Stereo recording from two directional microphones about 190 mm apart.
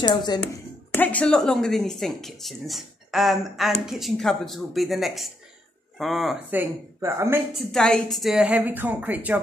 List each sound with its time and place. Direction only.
0.0 s speech: 20° left (ahead or behind)
0.9 s speech: 10° left (ahead or behind)
6.6 s a woman's voice: 15° right (ahead or behind)
7.5 s a woman's voice: 5° left (ahead or behind)